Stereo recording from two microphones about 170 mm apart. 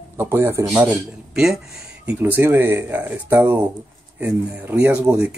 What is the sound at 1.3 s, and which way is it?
Speech, centre (ahead or behind).